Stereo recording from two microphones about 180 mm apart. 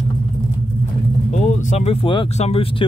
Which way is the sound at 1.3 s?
40° left (ahead or behind).